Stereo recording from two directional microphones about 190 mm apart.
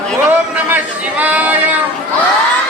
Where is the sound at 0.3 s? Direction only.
10° right (ahead or behind).